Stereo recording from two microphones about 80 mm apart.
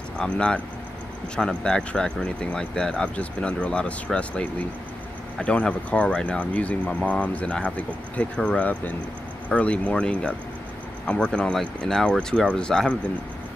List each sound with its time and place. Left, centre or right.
0.2 s speech: centre